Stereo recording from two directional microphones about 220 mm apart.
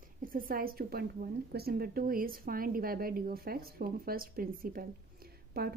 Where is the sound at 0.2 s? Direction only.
40° right (ahead or behind).